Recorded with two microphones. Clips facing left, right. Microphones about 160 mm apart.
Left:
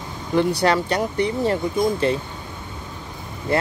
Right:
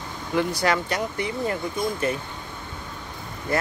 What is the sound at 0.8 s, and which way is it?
Speech, 35° left (ahead or behind).